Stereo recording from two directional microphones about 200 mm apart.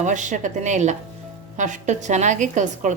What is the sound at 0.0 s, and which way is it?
A woman's voice, 40° right (ahead or behind).